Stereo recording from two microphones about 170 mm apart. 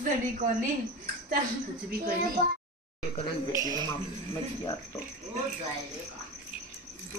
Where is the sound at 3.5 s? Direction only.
20° right (ahead or behind).